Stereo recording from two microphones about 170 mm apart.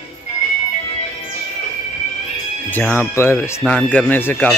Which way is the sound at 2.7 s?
10° left (ahead or behind).